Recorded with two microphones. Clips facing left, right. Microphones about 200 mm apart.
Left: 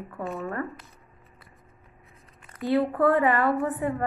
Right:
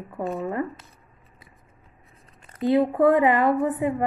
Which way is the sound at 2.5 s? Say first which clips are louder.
Right 4 dB; 20° right (ahead or behind).